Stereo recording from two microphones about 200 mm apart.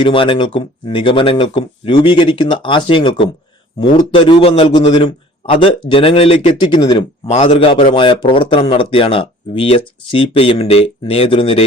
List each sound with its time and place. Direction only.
0.0 s speech: 25° left (ahead or behind)